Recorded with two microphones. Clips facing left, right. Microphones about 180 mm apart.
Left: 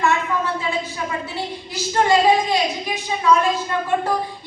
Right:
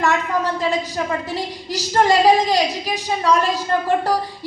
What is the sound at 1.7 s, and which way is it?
A woman's voice, 40° right (ahead or behind).